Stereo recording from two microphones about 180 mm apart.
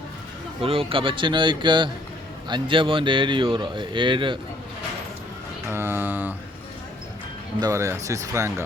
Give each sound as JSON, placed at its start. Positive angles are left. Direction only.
{"t": 0.6, "sound": "speech", "side_deg": -30}
{"t": 5.6, "sound": "mantra", "side_deg": -10}
{"t": 7.6, "sound": "speech", "side_deg": -15}